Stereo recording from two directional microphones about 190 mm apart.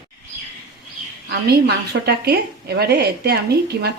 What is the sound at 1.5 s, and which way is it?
A woman's voice, 55° right (ahead or behind).